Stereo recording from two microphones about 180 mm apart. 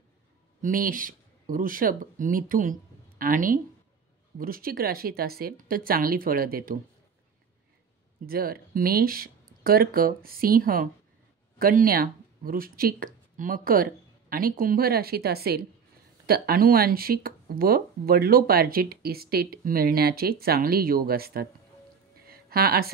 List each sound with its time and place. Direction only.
0.6 s speech: 50° right (ahead or behind)
8.3 s speech: 55° right (ahead or behind)
22.3 s a sound: 55° right (ahead or behind)